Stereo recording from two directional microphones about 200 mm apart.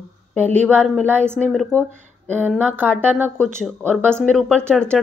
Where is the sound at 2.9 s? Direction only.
Centre (ahead or behind).